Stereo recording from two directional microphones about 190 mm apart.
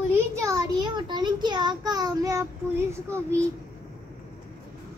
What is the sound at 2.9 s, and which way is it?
Speech, 15° right (ahead or behind).